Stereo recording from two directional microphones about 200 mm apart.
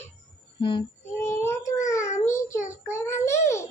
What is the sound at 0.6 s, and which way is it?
Speech, 25° left (ahead or behind).